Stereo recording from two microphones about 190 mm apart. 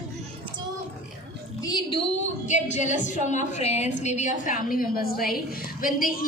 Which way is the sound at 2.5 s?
40° left (ahead or behind).